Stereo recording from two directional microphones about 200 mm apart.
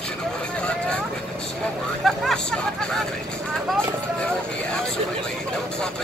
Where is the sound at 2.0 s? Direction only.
Centre (ahead or behind).